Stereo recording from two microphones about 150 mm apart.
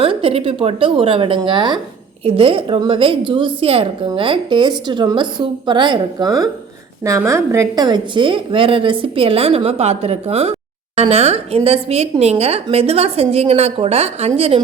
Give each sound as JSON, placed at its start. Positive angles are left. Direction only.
{"t": 0.0, "sound": "a woman's voice", "side_deg": -40}